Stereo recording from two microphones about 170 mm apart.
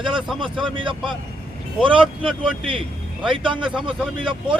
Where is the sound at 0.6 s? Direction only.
30° right (ahead or behind).